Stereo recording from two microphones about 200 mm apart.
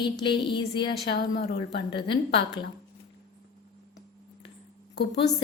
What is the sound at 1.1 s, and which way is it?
Speech, 55° left (ahead or behind).